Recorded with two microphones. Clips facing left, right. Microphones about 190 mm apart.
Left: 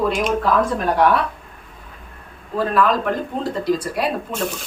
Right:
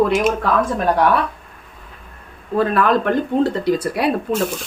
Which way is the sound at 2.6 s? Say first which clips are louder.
Right 1 dB; 65° right (ahead or behind).